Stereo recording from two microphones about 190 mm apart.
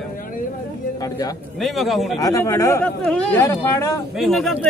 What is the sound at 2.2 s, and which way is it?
Speech, 15° left (ahead or behind).